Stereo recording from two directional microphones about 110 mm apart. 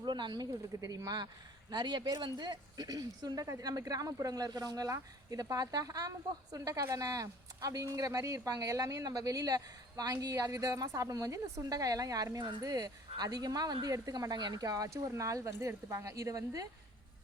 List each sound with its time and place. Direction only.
0.0 s speech: 45° right (ahead or behind)
0.8 s speech: 30° right (ahead or behind)